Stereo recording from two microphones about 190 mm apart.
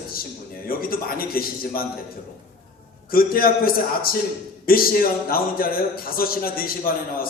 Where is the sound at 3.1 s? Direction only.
50° left (ahead or behind).